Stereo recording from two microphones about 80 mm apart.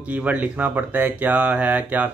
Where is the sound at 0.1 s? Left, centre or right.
Centre.